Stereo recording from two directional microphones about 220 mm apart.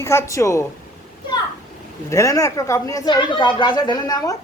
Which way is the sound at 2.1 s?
15° left (ahead or behind).